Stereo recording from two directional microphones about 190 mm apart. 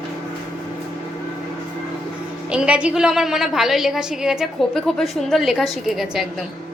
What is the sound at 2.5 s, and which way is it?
A woman's voice, 5° right (ahead or behind).